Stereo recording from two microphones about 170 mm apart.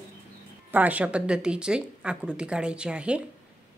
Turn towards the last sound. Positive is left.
turn(degrees=-5)  # may be behind; listen again after turning